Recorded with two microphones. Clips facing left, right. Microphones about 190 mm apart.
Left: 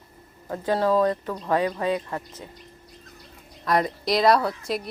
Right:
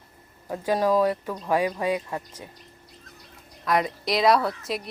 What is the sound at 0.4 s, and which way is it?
Speech, 10° right (ahead or behind).